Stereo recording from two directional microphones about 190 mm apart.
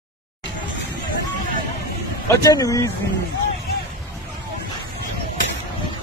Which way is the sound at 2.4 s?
20° left (ahead or behind).